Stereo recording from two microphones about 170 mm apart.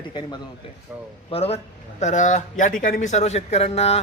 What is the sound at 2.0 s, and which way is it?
A man's voice, 45° left (ahead or behind).